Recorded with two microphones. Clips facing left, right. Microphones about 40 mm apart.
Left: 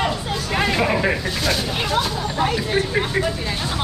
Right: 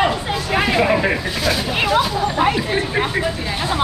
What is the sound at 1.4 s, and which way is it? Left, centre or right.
Speech, centre.